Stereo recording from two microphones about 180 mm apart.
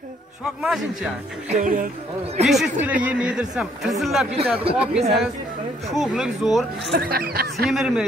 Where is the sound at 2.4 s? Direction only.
Centre (ahead or behind).